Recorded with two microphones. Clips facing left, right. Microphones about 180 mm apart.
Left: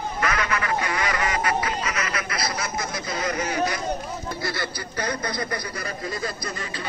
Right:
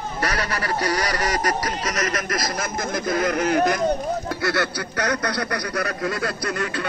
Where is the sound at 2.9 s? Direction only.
50° right (ahead or behind).